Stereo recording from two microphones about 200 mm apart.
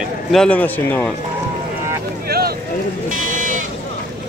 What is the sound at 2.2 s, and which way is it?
Boat, 50° right (ahead or behind).